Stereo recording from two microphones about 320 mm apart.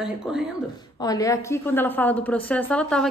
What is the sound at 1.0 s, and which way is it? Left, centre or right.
A woman's voice, centre.